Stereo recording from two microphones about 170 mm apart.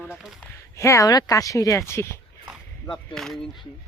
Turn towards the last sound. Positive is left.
turn(degrees=0)  # may be behind; listen again after turning